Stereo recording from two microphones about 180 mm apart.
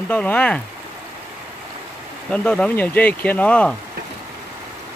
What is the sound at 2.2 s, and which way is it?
Speech, 5° left (ahead or behind).